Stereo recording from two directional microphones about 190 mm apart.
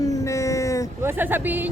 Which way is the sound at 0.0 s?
15° left (ahead or behind).